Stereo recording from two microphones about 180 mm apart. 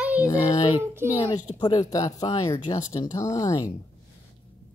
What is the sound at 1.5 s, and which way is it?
Speech, 25° left (ahead or behind).